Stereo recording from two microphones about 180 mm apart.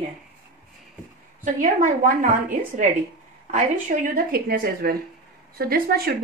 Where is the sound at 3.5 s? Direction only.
50° right (ahead or behind).